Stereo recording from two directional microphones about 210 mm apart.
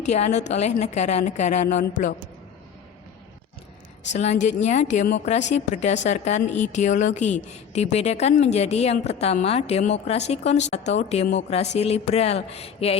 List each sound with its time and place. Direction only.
0.0 s a woman's voice: 30° left (ahead or behind)
4.1 s a woman's voice: 35° left (ahead or behind)